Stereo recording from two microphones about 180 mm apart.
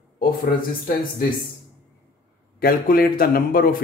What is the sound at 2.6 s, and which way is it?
Speech, 55° left (ahead or behind).